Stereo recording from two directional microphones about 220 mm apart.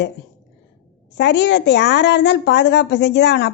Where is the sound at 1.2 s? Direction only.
50° left (ahead or behind).